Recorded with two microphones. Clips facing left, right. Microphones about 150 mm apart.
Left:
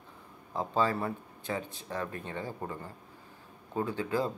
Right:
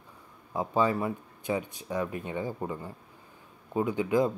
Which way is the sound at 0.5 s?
15° right (ahead or behind).